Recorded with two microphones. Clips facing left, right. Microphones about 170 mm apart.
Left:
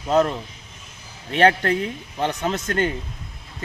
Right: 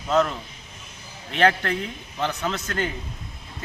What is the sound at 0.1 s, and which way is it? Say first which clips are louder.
Speech: left 3 dB; 35° left (ahead or behind).